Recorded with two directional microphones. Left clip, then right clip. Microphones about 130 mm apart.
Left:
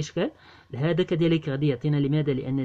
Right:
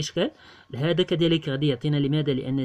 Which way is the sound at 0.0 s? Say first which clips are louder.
Right 2 dB; 25° right (ahead or behind).